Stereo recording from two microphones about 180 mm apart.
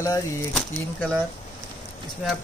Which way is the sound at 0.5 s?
5° left (ahead or behind).